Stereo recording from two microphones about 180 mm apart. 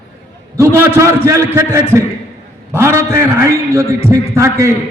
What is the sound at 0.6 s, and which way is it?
A man's voice, 15° right (ahead or behind).